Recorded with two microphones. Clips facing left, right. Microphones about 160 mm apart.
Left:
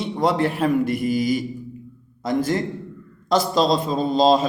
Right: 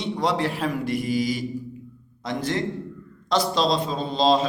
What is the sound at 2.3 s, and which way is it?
A man's voice, 45° left (ahead or behind).